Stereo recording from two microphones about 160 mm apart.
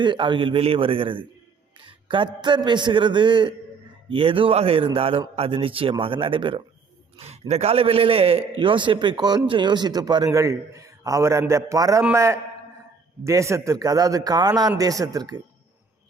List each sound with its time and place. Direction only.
0.0 s a man's voice: 30° right (ahead or behind)